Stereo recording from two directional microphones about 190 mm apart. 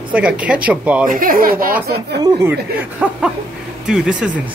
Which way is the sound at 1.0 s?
45° right (ahead or behind).